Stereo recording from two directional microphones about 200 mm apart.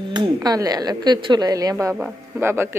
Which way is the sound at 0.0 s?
25° right (ahead or behind).